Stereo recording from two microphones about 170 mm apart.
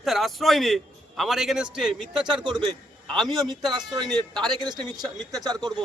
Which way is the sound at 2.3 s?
25° right (ahead or behind).